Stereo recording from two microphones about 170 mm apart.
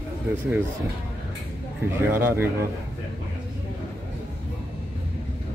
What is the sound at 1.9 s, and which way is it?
Speech, 15° right (ahead or behind).